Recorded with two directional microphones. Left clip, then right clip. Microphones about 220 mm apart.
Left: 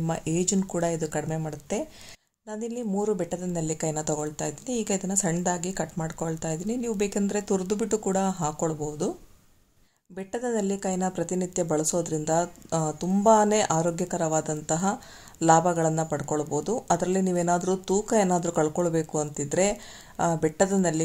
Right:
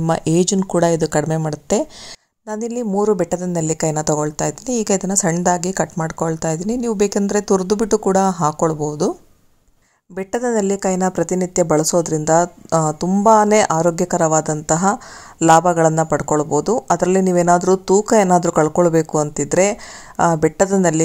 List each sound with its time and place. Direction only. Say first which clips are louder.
0.0 s a woman's voice: right 11 dB; 30° right (ahead or behind)
10.1 s a woman's voice: right 10 dB; 25° right (ahead or behind)